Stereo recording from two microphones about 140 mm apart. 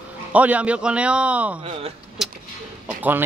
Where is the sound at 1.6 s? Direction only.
45° right (ahead or behind).